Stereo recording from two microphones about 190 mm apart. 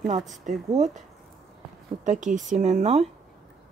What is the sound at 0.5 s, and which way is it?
Speech, 40° right (ahead or behind).